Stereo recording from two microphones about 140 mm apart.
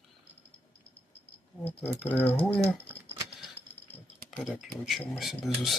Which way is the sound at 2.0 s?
15° left (ahead or behind).